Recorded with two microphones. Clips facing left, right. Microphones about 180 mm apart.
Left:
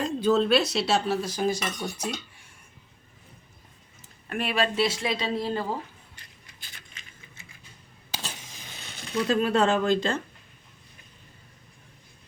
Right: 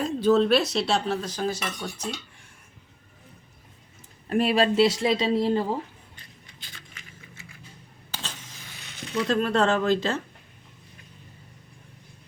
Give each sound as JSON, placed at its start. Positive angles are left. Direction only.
{"t": 0.0, "sound": "speech", "side_deg": 0}
{"t": 4.3, "sound": "speech", "side_deg": -35}
{"t": 6.7, "sound": "a sound", "side_deg": 20}
{"t": 9.2, "sound": "speech", "side_deg": 0}